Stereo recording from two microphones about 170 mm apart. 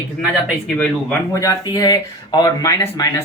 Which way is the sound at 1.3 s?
15° left (ahead or behind).